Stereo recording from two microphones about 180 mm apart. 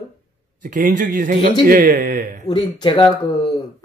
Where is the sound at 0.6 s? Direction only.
45° right (ahead or behind).